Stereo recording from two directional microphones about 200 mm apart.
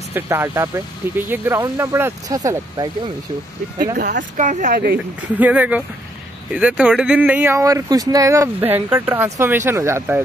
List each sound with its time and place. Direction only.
0.1 s speech: 10° right (ahead or behind)
4.0 s speech: 60° right (ahead or behind)
4.4 s speech: 40° right (ahead or behind)
5.4 s speech: 5° right (ahead or behind)